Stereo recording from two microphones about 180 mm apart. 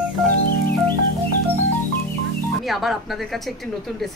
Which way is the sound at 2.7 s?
Centre (ahead or behind).